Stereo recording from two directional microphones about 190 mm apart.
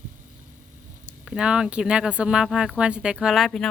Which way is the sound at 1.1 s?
5° right (ahead or behind).